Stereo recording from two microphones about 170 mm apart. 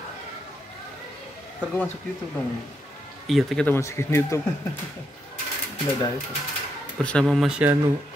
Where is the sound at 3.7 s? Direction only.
15° left (ahead or behind).